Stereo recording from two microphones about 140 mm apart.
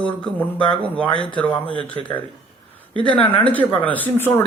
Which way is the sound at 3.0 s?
10° left (ahead or behind).